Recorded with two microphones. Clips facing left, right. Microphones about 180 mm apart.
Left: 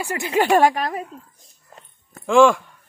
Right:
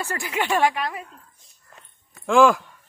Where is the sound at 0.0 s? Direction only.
15° left (ahead or behind).